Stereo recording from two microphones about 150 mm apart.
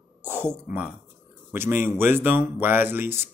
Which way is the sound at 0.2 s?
15° right (ahead or behind).